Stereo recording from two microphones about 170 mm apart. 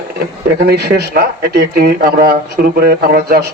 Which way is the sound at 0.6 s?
70° right (ahead or behind).